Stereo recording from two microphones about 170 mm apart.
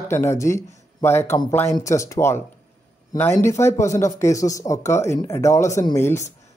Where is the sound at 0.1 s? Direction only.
15° left (ahead or behind).